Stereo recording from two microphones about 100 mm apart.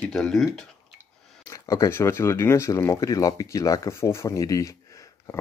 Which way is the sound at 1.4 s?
35° left (ahead or behind).